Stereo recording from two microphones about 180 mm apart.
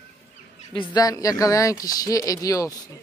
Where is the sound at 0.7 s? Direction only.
20° left (ahead or behind).